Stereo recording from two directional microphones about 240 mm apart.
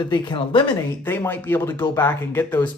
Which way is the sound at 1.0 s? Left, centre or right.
Centre.